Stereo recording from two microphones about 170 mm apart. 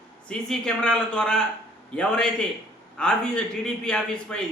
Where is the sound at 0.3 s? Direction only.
5° left (ahead or behind).